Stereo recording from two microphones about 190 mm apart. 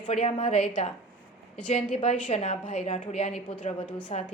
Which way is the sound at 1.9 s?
30° left (ahead or behind).